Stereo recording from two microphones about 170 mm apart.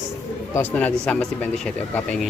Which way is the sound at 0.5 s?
10° left (ahead or behind).